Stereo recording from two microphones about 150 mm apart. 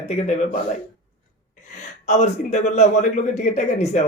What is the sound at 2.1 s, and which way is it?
A man's voice, 50° left (ahead or behind).